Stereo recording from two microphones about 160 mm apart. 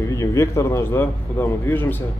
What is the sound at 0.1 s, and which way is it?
A man's voice, 20° left (ahead or behind).